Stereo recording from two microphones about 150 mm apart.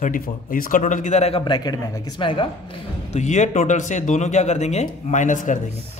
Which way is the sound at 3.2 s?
55° left (ahead or behind).